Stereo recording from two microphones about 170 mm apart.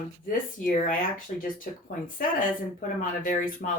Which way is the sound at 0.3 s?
55° left (ahead or behind).